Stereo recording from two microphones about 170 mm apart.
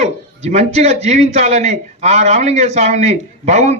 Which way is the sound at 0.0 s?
40° right (ahead or behind).